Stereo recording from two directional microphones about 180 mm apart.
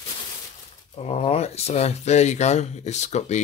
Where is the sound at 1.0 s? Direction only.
35° left (ahead or behind).